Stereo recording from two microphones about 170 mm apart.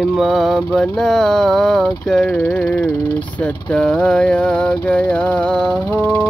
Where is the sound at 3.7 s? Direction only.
5° left (ahead or behind).